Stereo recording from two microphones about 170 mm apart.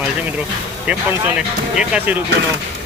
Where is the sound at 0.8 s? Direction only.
10° right (ahead or behind).